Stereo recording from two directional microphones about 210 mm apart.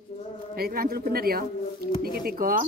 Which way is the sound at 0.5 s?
45° right (ahead or behind).